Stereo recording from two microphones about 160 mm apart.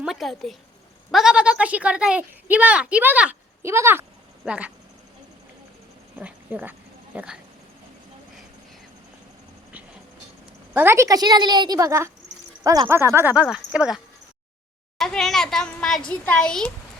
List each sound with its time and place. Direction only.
0.0 s a child's voice: centre (ahead or behind)
6.1 s a sound: 10° right (ahead or behind)
10.8 s a woman's voice: 15° right (ahead or behind); by 16.7 s 5° left (ahead or behind)